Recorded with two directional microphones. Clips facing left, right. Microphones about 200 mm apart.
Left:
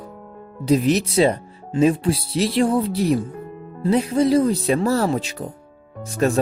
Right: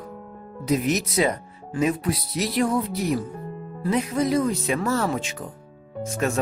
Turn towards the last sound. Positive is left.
turn(degrees=35)  # may be behind; listen again after turning